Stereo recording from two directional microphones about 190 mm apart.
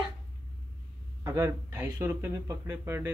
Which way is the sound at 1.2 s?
15° right (ahead or behind).